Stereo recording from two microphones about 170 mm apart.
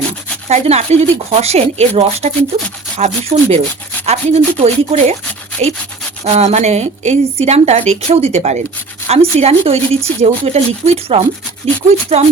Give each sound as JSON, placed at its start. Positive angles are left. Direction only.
{"t": 0.4, "sound": "speech", "side_deg": -40}
{"t": 6.2, "sound": "speech", "side_deg": -40}